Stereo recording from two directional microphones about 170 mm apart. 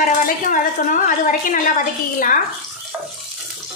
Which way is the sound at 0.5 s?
50° left (ahead or behind).